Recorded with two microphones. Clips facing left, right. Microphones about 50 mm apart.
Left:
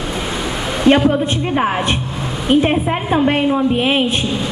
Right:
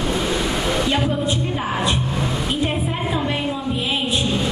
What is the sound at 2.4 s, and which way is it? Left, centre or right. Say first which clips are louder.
A woman's voice: left 8 dB; left.